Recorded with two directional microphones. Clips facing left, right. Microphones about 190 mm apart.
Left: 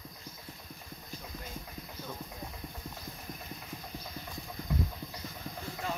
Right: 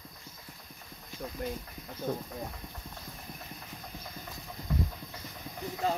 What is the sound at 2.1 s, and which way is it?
Speech, 50° right (ahead or behind).